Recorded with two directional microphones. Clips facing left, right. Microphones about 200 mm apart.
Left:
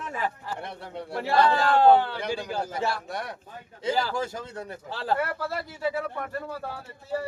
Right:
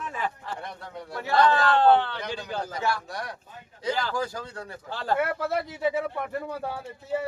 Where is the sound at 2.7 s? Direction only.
25° left (ahead or behind).